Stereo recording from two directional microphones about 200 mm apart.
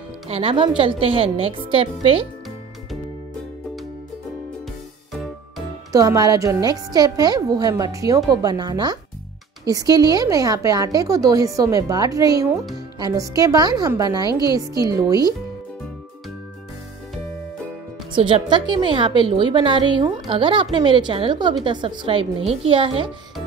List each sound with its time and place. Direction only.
0.3 s a woman's voice: 25° right (ahead or behind)
5.9 s a woman's voice: 15° right (ahead or behind)
18.1 s a woman's voice: 25° right (ahead or behind)